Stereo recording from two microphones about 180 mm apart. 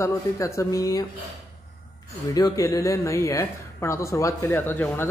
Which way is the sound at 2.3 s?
20° left (ahead or behind).